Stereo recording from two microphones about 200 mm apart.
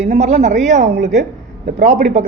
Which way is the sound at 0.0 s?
35° right (ahead or behind).